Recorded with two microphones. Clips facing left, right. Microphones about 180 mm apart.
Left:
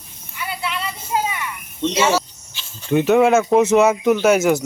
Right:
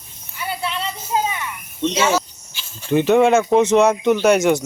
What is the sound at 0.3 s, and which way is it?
Child singing, 30° right (ahead or behind).